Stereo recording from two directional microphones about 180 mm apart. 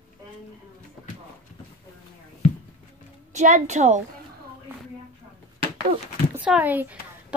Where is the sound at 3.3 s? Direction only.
40° right (ahead or behind).